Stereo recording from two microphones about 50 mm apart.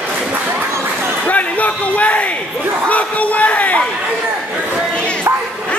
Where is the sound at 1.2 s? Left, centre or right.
Left.